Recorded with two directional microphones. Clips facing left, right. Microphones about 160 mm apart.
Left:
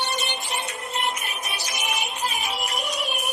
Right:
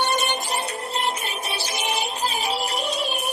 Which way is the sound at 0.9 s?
30° right (ahead or behind).